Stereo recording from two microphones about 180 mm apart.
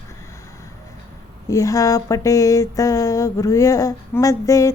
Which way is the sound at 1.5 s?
15° left (ahead or behind).